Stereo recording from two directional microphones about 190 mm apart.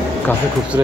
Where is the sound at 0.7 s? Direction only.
15° right (ahead or behind).